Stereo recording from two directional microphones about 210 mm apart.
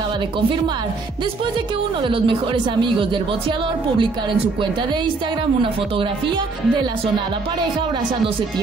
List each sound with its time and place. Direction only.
2.0 s speech: 25° right (ahead or behind)